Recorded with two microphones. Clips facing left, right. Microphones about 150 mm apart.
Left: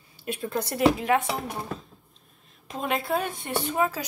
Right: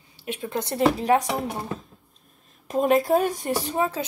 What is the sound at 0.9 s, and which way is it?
Speech, 35° right (ahead or behind).